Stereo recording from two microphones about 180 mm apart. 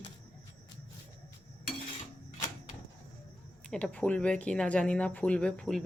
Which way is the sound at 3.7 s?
5° left (ahead or behind).